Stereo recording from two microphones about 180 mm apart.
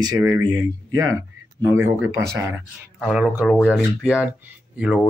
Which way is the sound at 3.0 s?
5° right (ahead or behind).